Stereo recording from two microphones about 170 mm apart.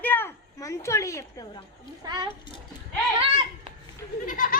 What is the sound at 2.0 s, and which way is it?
Speech, 25° right (ahead or behind).